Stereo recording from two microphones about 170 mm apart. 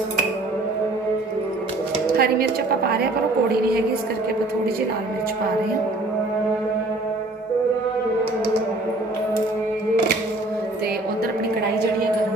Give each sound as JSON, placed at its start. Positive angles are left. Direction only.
{"t": 2.1, "sound": "a woman's voice", "side_deg": -65}